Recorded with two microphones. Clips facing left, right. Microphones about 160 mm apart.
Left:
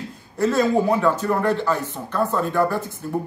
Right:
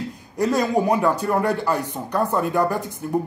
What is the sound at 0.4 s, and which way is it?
Speech, 15° right (ahead or behind).